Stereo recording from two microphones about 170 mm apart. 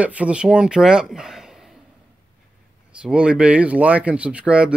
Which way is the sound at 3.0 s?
5° right (ahead or behind).